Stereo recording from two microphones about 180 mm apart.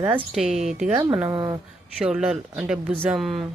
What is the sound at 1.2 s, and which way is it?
Speech, 20° right (ahead or behind).